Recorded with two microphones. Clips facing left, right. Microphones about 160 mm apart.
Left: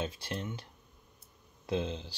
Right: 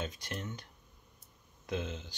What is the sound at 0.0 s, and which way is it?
Speech, 30° left (ahead or behind).